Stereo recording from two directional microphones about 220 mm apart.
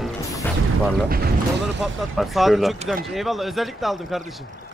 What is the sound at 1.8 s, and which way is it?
A man's voice, centre (ahead or behind).